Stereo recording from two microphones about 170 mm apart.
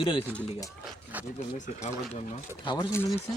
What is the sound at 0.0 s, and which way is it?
Speech, 30° left (ahead or behind).